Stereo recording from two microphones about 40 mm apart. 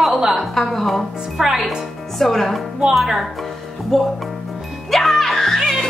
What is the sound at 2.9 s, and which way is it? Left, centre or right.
Speech, centre.